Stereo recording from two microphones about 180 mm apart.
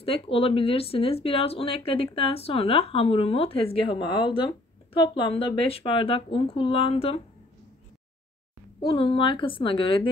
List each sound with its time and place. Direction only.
0.0 s speech: 30° left (ahead or behind)
8.8 s a woman's voice: 30° left (ahead or behind)